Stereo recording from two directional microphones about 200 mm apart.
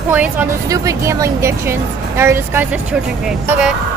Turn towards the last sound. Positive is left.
turn(degrees=-5)  # may be behind; listen again after turning